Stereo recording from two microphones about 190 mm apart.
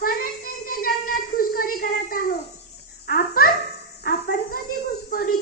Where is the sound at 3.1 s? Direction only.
50° left (ahead or behind).